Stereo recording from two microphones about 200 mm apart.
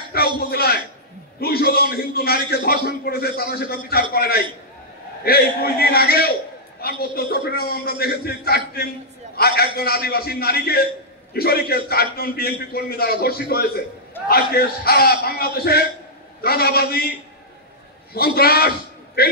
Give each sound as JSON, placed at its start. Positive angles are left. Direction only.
{"t": 0.1, "sound": "a sound", "side_deg": 50}
{"t": 0.5, "sound": "a man's voice", "side_deg": 50}
{"t": 18.1, "sound": "a man's voice", "side_deg": 50}